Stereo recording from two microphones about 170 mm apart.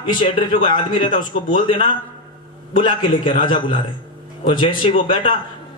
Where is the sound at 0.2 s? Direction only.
30° left (ahead or behind).